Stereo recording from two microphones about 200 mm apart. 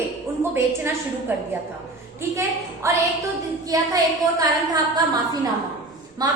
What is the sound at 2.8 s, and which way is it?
A woman's voice, 15° right (ahead or behind).